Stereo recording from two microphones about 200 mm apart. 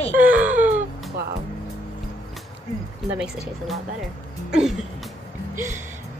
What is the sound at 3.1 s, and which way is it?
Speech, 5° right (ahead or behind).